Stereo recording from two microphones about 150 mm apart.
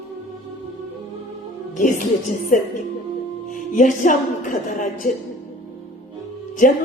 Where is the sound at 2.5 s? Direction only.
60° left (ahead or behind).